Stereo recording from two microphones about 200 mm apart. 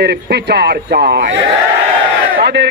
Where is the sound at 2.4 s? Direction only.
55° right (ahead or behind).